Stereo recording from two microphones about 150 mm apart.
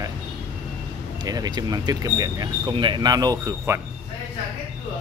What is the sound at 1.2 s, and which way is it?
Speech, 25° right (ahead or behind).